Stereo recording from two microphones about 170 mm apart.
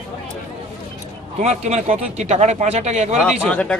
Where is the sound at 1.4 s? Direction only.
40° right (ahead or behind).